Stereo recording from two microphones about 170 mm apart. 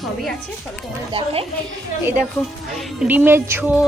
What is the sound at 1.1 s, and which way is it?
Speech, 35° right (ahead or behind).